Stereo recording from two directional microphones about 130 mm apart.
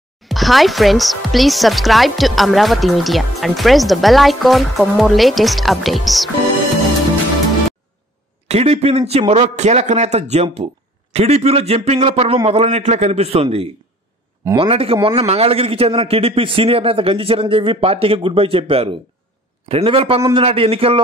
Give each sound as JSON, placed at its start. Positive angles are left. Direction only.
{"t": 0.2, "sound": "speech", "side_deg": 0}
{"t": 8.5, "sound": "a man's voice", "side_deg": -55}